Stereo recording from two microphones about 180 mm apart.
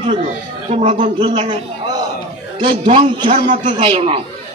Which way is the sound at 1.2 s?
25° right (ahead or behind).